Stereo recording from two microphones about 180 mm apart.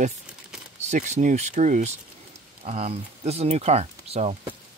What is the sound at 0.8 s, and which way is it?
Speech, 40° right (ahead or behind).